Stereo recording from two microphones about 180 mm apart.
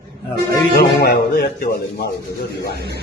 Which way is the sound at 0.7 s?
60° left (ahead or behind).